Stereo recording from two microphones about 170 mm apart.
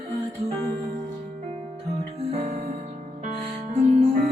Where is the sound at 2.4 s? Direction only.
40° right (ahead or behind).